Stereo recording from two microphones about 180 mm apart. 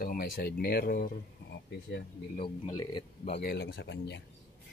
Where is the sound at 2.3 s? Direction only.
30° left (ahead or behind).